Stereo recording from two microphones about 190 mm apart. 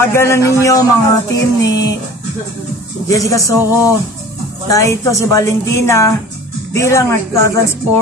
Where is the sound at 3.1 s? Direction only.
15° left (ahead or behind).